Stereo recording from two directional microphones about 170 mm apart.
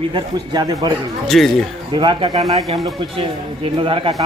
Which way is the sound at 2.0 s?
30° right (ahead or behind).